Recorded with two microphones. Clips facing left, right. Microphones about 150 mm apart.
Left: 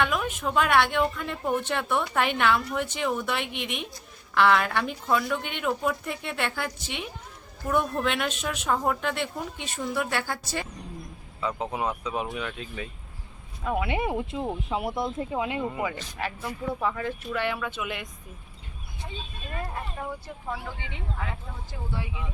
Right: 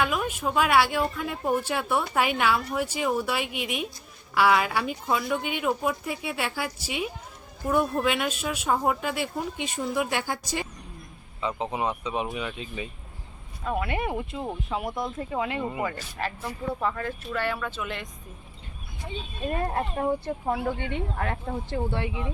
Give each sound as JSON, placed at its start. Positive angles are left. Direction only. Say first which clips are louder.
{"t": 0.0, "sound": "speech", "louder": "even", "side_deg": -5}
{"t": 11.4, "sound": "speech", "louder": "right 1 dB", "side_deg": 0}
{"t": 13.7, "sound": "speech", "louder": "left 1 dB", "side_deg": 15}
{"t": 15.6, "sound": "speech", "louder": "even", "side_deg": -5}
{"t": 16.8, "sound": "speech", "louder": "left 1 dB", "side_deg": 10}
{"t": 19.6, "sound": "speech", "louder": "right 9 dB", "side_deg": -50}